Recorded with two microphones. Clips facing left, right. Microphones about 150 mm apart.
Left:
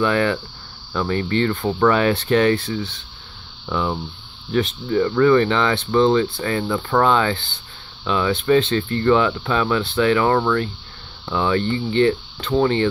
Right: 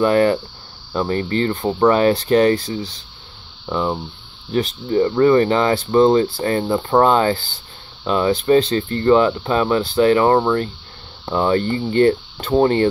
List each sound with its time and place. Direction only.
0.0 s speech: 40° right (ahead or behind)
1.6 s speech: 20° right (ahead or behind)
1.9 s speech: 35° right (ahead or behind)
4.5 s speech: 35° right (ahead or behind)